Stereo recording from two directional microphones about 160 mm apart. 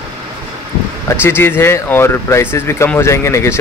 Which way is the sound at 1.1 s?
15° left (ahead or behind).